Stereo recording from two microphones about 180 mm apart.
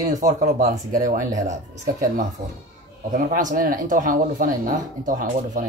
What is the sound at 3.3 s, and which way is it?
Speech, 50° right (ahead or behind).